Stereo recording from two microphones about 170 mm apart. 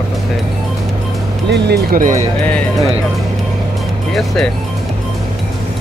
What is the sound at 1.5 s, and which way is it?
Speech, 80° right.